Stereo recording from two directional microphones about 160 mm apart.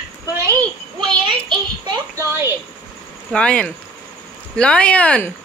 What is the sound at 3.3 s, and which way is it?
Speech, 5° left (ahead or behind).